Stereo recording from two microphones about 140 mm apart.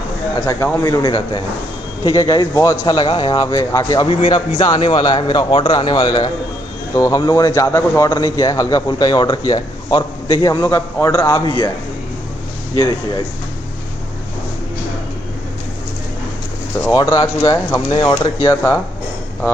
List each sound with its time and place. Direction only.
0.5 s a man's voice: 20° left (ahead or behind)
3.0 s a man's voice: 30° left (ahead or behind)
16.9 s a man's voice: 30° left (ahead or behind)
18.5 s a man's voice: 20° left (ahead or behind)